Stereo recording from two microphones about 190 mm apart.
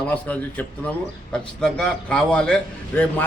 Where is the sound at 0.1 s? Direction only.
5° left (ahead or behind).